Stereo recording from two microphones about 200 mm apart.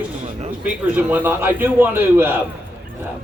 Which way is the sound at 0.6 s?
10° right (ahead or behind).